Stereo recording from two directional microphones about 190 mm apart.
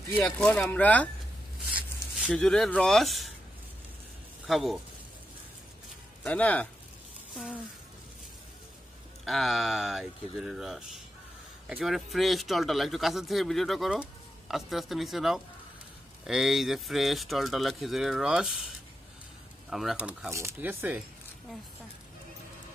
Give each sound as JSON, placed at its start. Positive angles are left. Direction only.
{"t": 0.1, "sound": "speech", "side_deg": 10}
{"t": 1.7, "sound": "zipper", "side_deg": -5}
{"t": 2.3, "sound": "speech", "side_deg": 0}
{"t": 4.5, "sound": "speech", "side_deg": 0}
{"t": 6.2, "sound": "speech", "side_deg": 5}
{"t": 9.2, "sound": "speech", "side_deg": 0}
{"t": 19.7, "sound": "speech", "side_deg": 0}